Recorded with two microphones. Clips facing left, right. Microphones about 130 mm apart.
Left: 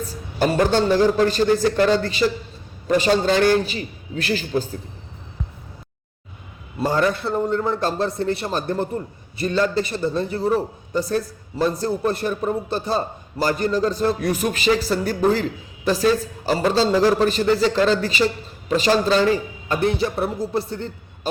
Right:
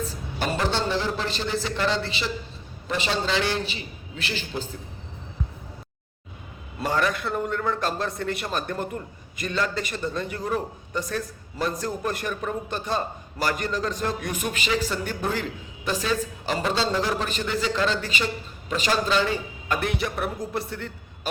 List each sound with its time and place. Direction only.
0.3 s a man's voice: 45° left (ahead or behind)
6.8 s a man's voice: 30° left (ahead or behind)